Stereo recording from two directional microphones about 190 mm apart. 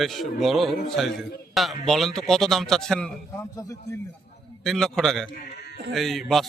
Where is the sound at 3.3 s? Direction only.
15° left (ahead or behind).